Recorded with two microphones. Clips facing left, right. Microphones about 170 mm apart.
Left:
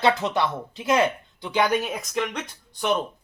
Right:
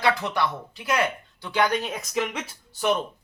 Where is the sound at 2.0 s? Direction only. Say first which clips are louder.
Even; centre (ahead or behind).